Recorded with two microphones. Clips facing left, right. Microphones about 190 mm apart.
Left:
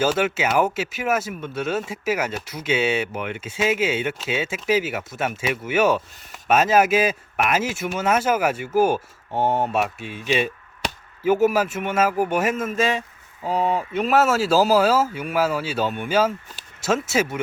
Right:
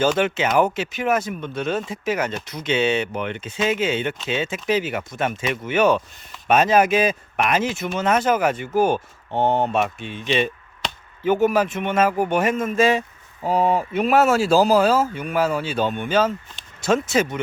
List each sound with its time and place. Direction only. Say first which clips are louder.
0.0 s speech: right 1 dB; 5° left (ahead or behind)
13.4 s speech: right 3 dB; 15° right (ahead or behind)
13.9 s speech: right 2 dB; 55° right (ahead or behind)
14.2 s speech: right 2 dB; centre (ahead or behind)